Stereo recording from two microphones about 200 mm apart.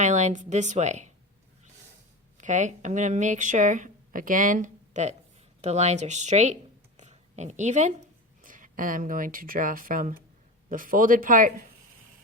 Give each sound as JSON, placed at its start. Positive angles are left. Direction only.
{"t": 0.0, "sound": "speech", "side_deg": -35}
{"t": 2.4, "sound": "speech", "side_deg": -40}